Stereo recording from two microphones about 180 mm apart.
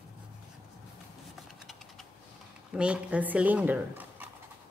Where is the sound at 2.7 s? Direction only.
5° right (ahead or behind).